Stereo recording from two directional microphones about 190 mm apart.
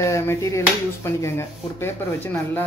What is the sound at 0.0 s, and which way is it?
Speech, 15° left (ahead or behind).